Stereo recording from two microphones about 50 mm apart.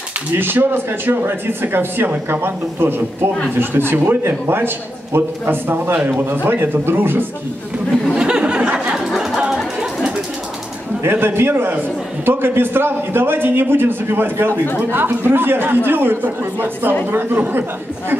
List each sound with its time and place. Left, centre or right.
0.3 s a man's voice: right
8.2 s a sound: centre
8.9 s music: centre
11.0 s a man's voice: right